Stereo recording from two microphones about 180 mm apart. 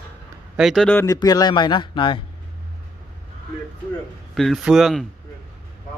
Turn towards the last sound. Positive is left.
turn(degrees=0)  # may be behind; listen again after turning